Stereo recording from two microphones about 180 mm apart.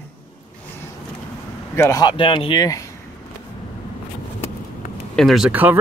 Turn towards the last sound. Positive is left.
turn(degrees=-10)  # may be behind; listen again after turning